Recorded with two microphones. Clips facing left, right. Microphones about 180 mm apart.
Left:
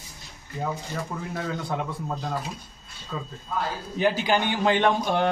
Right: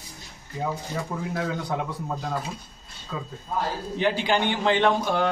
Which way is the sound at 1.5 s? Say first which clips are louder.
Right 1 dB; 5° left (ahead or behind).